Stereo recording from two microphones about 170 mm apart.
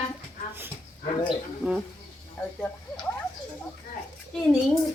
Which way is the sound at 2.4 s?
5° left (ahead or behind).